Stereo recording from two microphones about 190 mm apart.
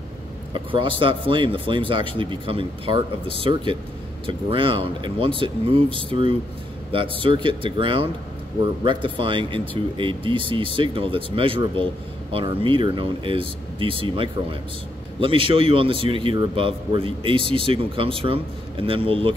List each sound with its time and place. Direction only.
0.7 s a man's voice: 25° right (ahead or behind)